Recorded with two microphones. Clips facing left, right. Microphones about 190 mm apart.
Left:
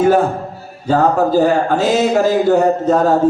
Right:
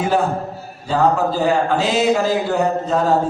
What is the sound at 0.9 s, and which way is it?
A man's voice, 45° left (ahead or behind).